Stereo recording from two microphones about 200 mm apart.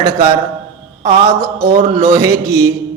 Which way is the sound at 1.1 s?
15° right (ahead or behind).